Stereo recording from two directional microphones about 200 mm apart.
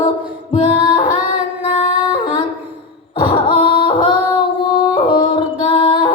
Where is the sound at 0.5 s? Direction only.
25° left (ahead or behind).